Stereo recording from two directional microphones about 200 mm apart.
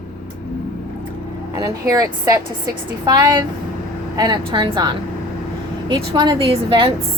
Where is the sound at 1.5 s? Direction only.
15° right (ahead or behind).